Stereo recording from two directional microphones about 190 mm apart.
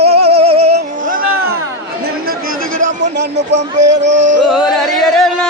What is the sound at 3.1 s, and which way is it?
Speech, 65° right (ahead or behind).